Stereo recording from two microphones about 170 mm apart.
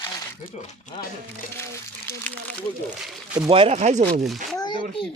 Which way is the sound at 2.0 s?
10° left (ahead or behind).